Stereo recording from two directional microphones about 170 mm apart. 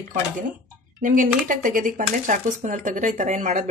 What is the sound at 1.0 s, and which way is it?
Speech, 50° right (ahead or behind).